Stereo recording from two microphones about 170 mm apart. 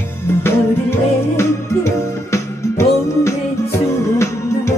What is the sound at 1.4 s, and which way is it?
Music, 15° left (ahead or behind).